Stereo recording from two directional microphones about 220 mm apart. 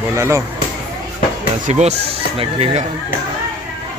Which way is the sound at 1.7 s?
30° right (ahead or behind).